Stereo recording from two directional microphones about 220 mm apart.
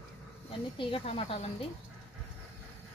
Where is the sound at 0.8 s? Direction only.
25° left (ahead or behind).